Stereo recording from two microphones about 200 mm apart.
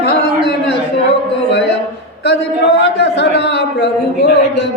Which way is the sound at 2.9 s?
60° left (ahead or behind).